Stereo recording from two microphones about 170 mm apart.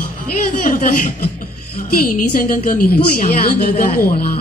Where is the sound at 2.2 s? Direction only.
55° left (ahead or behind).